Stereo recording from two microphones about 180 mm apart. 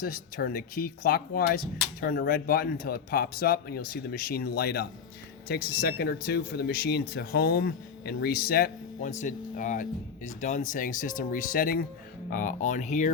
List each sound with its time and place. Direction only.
0.0 s speech: 55° left (ahead or behind)